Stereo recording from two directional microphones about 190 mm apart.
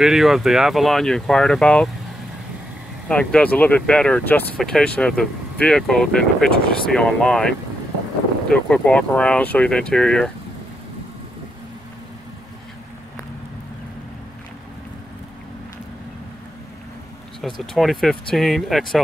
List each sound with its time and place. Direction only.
0.0 s speech: centre (ahead or behind)
3.1 s speech: 5° left (ahead or behind)
17.4 s speech: centre (ahead or behind)